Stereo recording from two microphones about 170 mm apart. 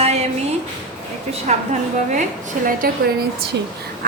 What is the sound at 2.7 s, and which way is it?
Speech, 55° right (ahead or behind).